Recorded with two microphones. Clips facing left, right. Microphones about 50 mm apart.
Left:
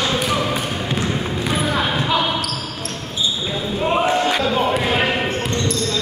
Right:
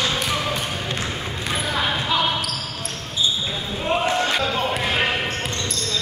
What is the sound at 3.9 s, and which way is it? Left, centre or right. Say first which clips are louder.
Basketball bounce: left 2 dB; centre.